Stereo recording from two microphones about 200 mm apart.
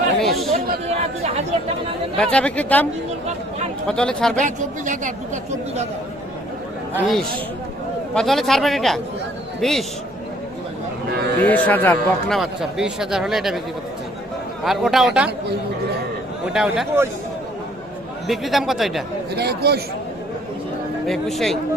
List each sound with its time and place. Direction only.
0.2 s speech: centre (ahead or behind)
0.5 s a woman's voice: 35° right (ahead or behind)
2.1 s a man's voice: 5° left (ahead or behind)
3.8 s speech: 5° left (ahead or behind)
4.4 s a woman's voice: 40° right (ahead or behind)
6.9 s speech: centre (ahead or behind)
11.4 s a man's voice: 10° left (ahead or behind)
12.4 s speech: centre (ahead or behind)
14.6 s speech: centre (ahead or behind)
16.5 s speech: 5° right (ahead or behind)
18.3 s speech: centre (ahead or behind)
19.3 s speech: 55° right (ahead or behind)
21.1 s speech: centre (ahead or behind)